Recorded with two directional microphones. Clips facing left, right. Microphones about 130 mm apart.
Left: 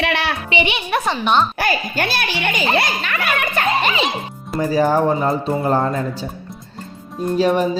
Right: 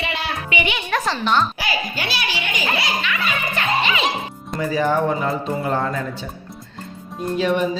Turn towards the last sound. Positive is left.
turn(degrees=40)  # may be behind; listen again after turning